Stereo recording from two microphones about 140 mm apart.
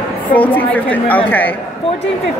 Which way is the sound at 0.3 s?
10° left (ahead or behind).